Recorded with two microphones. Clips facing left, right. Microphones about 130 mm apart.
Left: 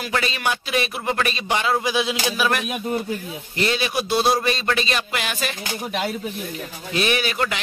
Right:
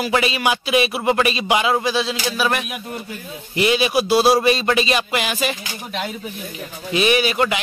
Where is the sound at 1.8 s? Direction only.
10° left (ahead or behind).